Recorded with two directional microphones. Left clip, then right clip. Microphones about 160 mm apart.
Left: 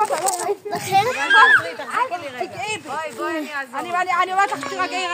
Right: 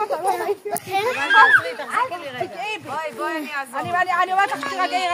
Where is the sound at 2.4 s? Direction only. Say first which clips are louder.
Right 1 dB; 40° left (ahead or behind).